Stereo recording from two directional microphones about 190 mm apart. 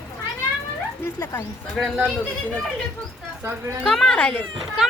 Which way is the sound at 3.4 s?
10° right (ahead or behind).